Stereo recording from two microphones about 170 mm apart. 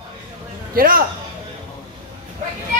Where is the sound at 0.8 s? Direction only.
55° right (ahead or behind).